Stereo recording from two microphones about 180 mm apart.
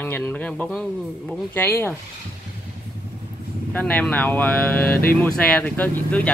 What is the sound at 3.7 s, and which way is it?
Speech, 10° left (ahead or behind).